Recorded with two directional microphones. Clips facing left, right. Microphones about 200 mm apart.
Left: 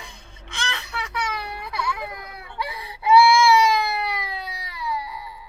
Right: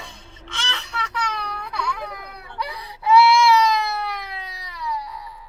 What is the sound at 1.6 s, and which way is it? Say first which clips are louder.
Baby cry: even; 5° left (ahead or behind).